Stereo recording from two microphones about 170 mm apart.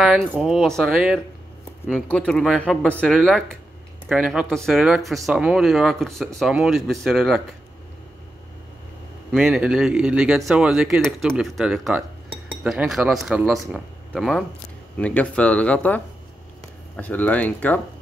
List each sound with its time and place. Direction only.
0.0 s speech: centre (ahead or behind)
9.3 s speech: centre (ahead or behind)